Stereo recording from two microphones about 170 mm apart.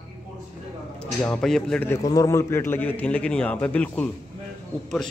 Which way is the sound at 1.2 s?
5° left (ahead or behind).